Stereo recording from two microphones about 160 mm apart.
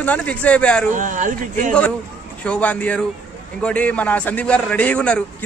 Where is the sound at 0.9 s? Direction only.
55° right (ahead or behind).